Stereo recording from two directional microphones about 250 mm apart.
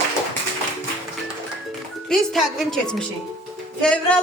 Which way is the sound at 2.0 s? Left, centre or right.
Centre.